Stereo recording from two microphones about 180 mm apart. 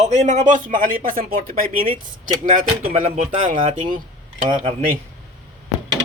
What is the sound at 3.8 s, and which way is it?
Speech, 50° right (ahead or behind).